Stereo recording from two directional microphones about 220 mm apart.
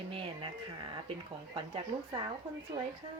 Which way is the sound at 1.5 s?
20° right (ahead or behind).